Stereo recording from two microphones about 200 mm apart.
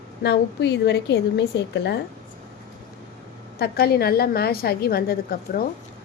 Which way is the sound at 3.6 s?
50° left (ahead or behind).